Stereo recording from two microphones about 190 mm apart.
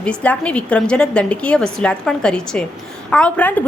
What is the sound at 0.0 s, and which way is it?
A woman's voice, 5° left (ahead or behind).